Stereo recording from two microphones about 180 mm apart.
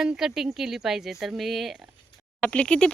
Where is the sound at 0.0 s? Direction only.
5° right (ahead or behind).